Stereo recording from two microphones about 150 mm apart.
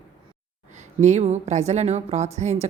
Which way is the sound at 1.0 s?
50° right (ahead or behind).